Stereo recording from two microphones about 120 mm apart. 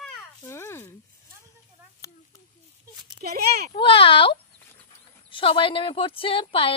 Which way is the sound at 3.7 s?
45° left (ahead or behind).